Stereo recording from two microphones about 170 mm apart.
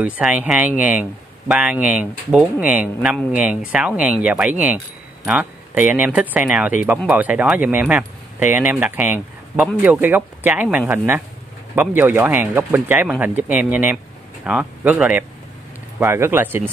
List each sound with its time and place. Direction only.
0.0 s speech: 5° right (ahead or behind)